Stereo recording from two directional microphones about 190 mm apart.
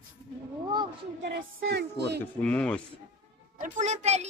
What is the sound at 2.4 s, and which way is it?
Speech, 5° left (ahead or behind).